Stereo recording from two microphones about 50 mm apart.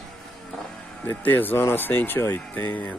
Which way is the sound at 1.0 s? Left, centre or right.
Left.